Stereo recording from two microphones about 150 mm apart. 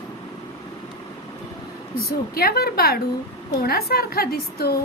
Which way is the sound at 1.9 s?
90° left.